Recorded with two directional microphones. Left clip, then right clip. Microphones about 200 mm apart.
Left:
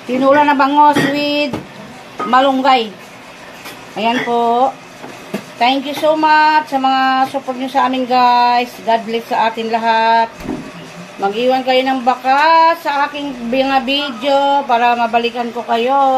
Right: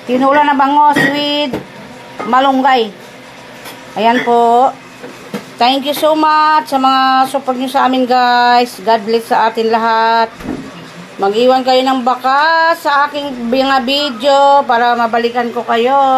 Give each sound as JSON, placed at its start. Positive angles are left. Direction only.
{"t": 0.2, "sound": "speech", "side_deg": -10}
{"t": 4.0, "sound": "speech", "side_deg": -25}
{"t": 5.6, "sound": "speech", "side_deg": -40}